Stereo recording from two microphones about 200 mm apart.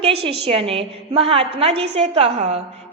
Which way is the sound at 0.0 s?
30° right (ahead or behind).